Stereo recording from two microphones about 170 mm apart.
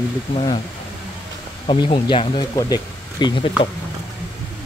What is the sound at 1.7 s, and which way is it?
Speech, 30° left (ahead or behind).